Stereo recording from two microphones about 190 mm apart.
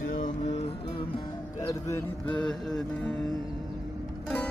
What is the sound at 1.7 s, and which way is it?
Speech, 15° left (ahead or behind).